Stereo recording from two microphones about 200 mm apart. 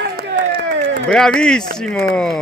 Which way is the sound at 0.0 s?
50° right (ahead or behind).